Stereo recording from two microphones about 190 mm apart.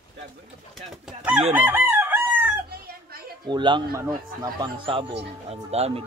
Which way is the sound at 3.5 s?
25° right (ahead or behind).